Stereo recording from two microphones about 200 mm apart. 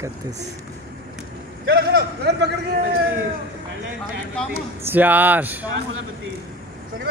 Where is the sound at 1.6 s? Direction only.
55° right (ahead or behind).